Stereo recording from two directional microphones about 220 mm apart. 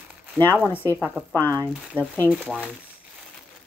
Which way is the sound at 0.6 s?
10° left (ahead or behind).